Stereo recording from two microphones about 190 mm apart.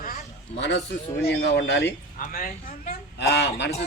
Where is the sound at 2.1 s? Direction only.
45° left (ahead or behind).